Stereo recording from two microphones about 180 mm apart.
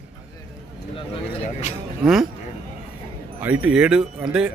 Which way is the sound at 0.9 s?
30° left (ahead or behind).